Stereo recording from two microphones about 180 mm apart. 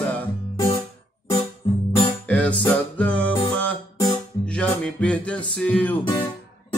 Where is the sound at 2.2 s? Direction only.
10° left (ahead or behind).